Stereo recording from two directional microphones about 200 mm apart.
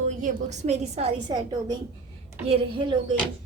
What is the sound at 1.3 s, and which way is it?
A woman's voice, 20° right (ahead or behind).